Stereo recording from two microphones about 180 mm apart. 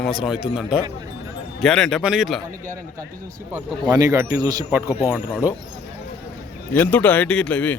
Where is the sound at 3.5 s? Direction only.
20° right (ahead or behind).